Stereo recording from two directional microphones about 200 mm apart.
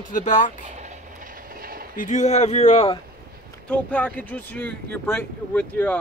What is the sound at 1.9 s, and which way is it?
Speech, 35° left (ahead or behind).